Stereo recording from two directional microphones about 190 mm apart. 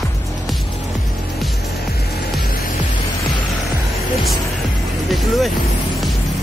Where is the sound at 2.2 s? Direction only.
55° left (ahead or behind).